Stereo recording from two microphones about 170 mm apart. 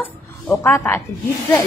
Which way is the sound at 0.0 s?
10° left (ahead or behind).